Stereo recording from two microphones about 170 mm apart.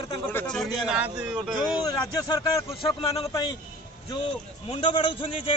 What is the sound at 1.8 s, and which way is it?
Speech, 20° left (ahead or behind).